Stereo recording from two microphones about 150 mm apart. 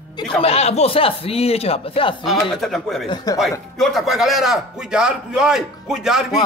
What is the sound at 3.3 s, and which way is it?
Speech, 25° left (ahead or behind).